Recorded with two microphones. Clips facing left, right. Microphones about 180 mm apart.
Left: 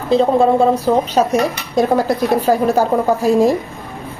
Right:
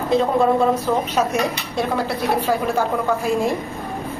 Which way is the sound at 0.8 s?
35° left (ahead or behind).